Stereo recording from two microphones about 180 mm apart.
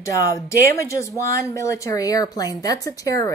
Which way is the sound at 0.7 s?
15° left (ahead or behind).